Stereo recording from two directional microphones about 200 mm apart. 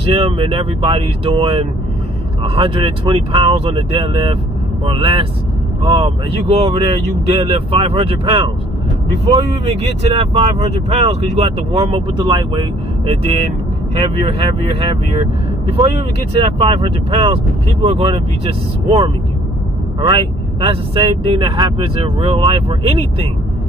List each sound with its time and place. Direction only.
0.0 s speech: 30° right (ahead or behind)
10.1 s speech: 30° right (ahead or behind)
16.3 s speech: 25° right (ahead or behind)